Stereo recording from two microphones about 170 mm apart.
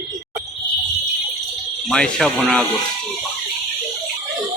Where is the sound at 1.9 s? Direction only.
5° left (ahead or behind).